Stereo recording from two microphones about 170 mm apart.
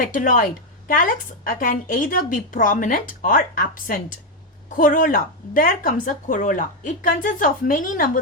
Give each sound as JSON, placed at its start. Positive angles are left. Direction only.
{"t": 0.0, "sound": "a woman's voice", "side_deg": 50}